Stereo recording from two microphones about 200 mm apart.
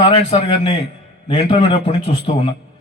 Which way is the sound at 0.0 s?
25° left (ahead or behind).